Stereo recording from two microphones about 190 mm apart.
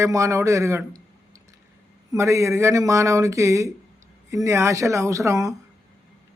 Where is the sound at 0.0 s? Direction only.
15° right (ahead or behind).